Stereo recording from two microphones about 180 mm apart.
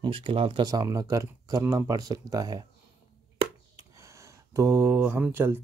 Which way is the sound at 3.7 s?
15° right (ahead or behind).